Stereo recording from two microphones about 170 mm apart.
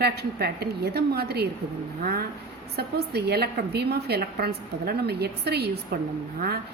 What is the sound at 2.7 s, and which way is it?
A woman's voice, 70° right (ahead or behind).